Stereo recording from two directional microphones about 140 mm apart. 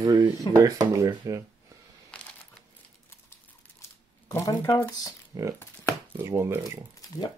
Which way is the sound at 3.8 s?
20° left (ahead or behind).